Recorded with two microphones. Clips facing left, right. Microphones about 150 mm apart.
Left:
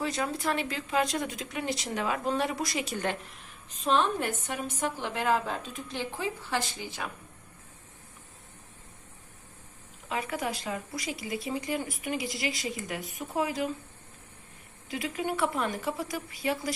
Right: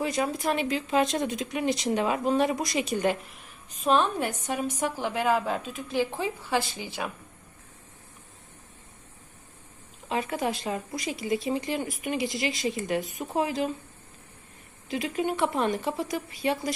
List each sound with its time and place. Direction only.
0.0 s a woman's voice: 15° right (ahead or behind)
6.1 s speech: 20° right (ahead or behind)
10.1 s speech: 25° right (ahead or behind)
14.8 s speech: 20° right (ahead or behind)